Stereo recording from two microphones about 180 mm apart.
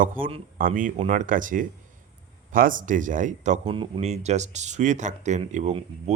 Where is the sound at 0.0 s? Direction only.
50° right (ahead or behind).